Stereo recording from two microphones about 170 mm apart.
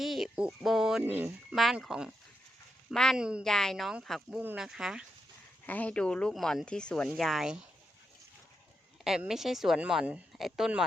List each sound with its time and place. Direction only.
0.0 s bird: centre (ahead or behind)
1.5 s speech: centre (ahead or behind)
5.6 s speech: 10° left (ahead or behind)
9.0 s speech: 5° right (ahead or behind)